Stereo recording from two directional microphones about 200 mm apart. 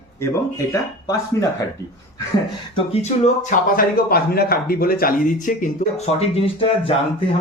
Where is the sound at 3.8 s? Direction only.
50° left (ahead or behind).